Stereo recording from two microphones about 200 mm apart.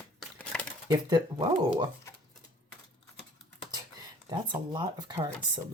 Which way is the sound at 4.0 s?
20° right (ahead or behind).